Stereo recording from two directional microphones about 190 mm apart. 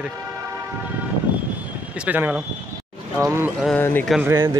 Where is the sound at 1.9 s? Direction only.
10° right (ahead or behind).